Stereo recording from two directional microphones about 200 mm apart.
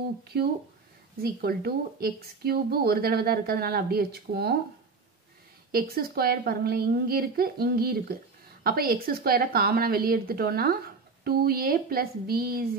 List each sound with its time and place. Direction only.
0.3 s speech: 55° right (ahead or behind)
5.7 s speech: 50° right (ahead or behind)